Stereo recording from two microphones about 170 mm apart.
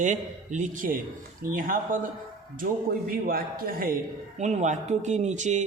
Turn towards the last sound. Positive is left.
turn(degrees=-45)  # may be behind; listen again after turning